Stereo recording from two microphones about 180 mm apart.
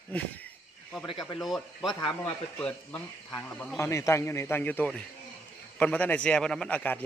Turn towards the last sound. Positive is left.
turn(degrees=10)  # may be behind; listen again after turning